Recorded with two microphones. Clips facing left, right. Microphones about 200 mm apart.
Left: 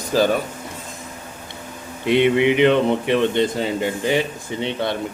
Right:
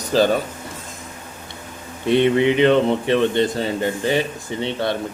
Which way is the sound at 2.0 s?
15° left (ahead or behind).